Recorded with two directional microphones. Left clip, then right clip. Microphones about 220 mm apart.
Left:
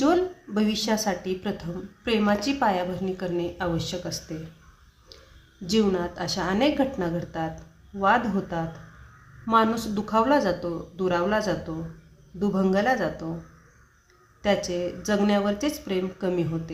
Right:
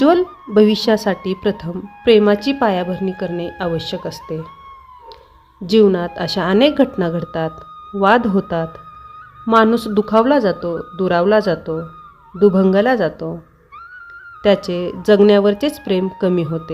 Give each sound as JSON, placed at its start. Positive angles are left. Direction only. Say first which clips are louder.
{"t": 0.0, "sound": "a woman's voice", "louder": "right 9 dB", "side_deg": -40}
{"t": 5.6, "sound": "a woman's voice", "louder": "right 11 dB", "side_deg": -40}
{"t": 14.4, "sound": "a woman's voice", "louder": "right 9 dB", "side_deg": -40}